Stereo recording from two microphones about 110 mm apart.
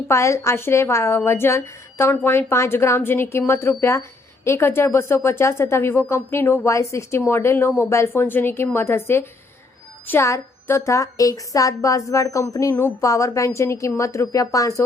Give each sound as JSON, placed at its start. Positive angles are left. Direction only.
{"t": 0.1, "sound": "a woman's voice", "side_deg": 25}